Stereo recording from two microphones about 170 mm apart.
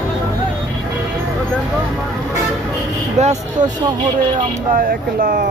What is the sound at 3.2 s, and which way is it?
Speech, 40° right (ahead or behind).